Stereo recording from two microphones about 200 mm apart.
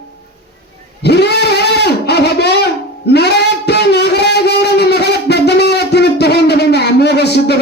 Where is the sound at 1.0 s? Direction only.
55° left (ahead or behind).